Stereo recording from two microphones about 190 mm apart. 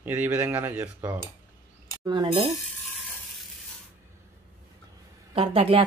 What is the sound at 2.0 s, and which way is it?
Speech, 25° right (ahead or behind).